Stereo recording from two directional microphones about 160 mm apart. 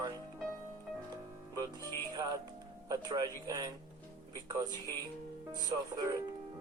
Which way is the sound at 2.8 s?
25° right (ahead or behind).